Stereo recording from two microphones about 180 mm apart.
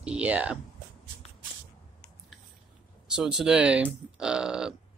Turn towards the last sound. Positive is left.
turn(degrees=-5)  # may be behind; listen again after turning